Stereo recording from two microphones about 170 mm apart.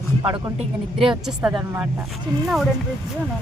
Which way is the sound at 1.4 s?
10° right (ahead or behind).